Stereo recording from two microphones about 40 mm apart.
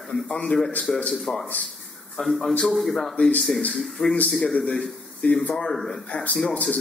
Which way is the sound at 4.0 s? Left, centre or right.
Left.